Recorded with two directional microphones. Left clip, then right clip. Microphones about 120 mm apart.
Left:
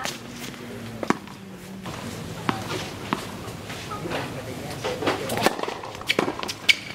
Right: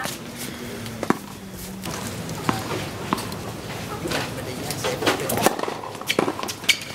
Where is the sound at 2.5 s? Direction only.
10° right (ahead or behind).